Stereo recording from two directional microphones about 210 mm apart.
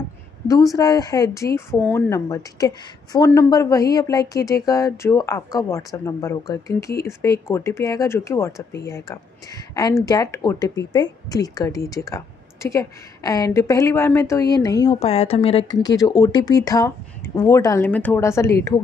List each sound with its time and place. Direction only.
0.5 s speech: 15° left (ahead or behind)
15.0 s speech: 30° left (ahead or behind); by 18.8 s 15° left (ahead or behind)